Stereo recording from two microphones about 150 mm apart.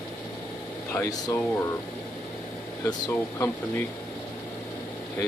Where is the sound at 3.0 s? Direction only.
15° left (ahead or behind).